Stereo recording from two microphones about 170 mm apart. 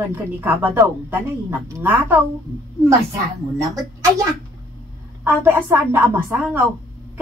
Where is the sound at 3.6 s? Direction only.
15° right (ahead or behind).